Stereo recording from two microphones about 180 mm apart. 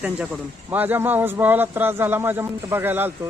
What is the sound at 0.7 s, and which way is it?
A man's voice, 10° right (ahead or behind).